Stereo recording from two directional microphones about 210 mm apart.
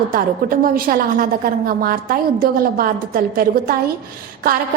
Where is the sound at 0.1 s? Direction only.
45° right (ahead or behind).